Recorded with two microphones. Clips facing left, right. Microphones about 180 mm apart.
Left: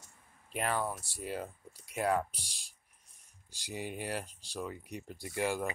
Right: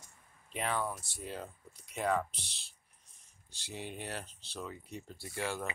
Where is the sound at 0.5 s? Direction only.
5° left (ahead or behind).